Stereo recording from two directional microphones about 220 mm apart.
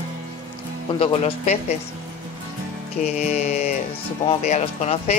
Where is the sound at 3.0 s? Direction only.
35° left (ahead or behind).